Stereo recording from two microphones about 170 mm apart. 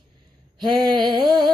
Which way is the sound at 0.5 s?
25° right (ahead or behind).